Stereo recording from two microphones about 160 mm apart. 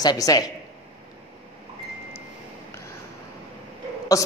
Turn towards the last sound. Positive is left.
turn(degrees=20)  # may be behind; listen again after turning